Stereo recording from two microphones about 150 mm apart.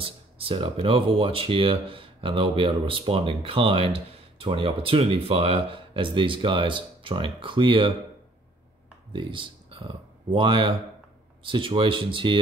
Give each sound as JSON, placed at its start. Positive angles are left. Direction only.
{"t": 0.0, "sound": "speech", "side_deg": -35}
{"t": 9.1, "sound": "speech", "side_deg": -35}